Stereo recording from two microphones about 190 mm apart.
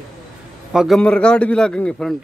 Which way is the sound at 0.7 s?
Centre (ahead or behind).